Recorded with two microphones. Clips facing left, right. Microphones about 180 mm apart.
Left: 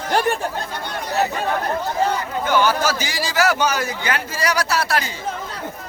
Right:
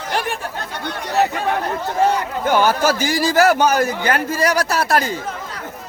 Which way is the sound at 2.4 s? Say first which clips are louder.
Right 2 dB; 50° right (ahead or behind).